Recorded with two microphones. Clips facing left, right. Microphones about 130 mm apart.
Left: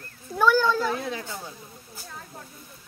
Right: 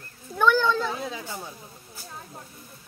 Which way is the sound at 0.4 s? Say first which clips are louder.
Left 1 dB; 5° left (ahead or behind).